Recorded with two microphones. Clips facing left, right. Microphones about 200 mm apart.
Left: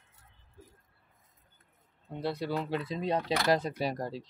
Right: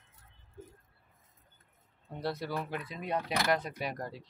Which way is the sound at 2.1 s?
20° left (ahead or behind).